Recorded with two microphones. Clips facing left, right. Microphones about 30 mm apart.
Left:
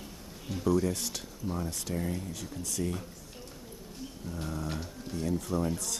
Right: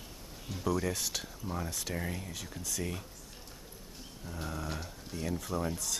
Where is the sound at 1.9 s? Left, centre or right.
Centre.